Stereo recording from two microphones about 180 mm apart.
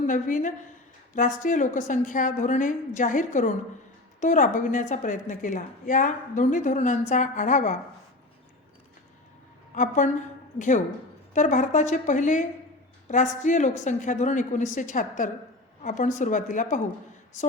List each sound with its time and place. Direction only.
0.1 s a woman's voice: 45° left (ahead or behind)
9.7 s a woman's voice: 45° left (ahead or behind)